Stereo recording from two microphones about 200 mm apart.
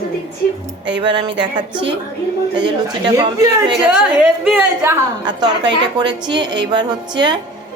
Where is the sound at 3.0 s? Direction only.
20° right (ahead or behind).